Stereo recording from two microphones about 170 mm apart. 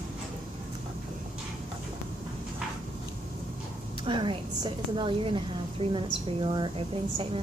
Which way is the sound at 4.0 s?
30° right (ahead or behind).